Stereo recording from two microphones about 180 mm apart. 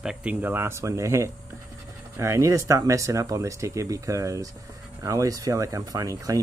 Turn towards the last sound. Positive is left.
turn(degrees=-20)  # may be behind; listen again after turning